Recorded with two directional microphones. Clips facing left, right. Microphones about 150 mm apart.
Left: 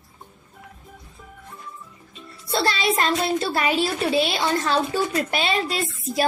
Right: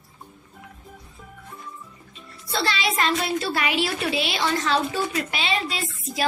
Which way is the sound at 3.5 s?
40° left (ahead or behind).